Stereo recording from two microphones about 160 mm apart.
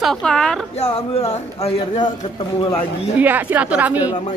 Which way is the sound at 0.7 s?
40° left (ahead or behind).